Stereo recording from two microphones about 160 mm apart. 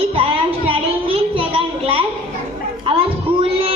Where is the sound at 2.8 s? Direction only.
35° right (ahead or behind).